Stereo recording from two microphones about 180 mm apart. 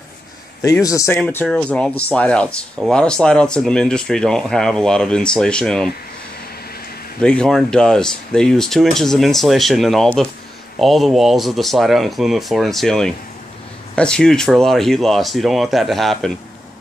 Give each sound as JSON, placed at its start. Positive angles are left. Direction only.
{"t": 0.6, "sound": "speech", "side_deg": 20}
{"t": 7.2, "sound": "speech", "side_deg": 5}